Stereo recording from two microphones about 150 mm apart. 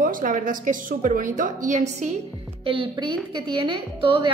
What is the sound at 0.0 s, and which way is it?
A woman's voice, 65° right (ahead or behind).